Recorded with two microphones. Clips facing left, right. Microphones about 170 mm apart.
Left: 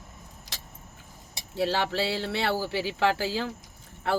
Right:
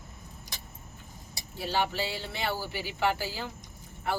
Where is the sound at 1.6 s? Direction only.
90° left.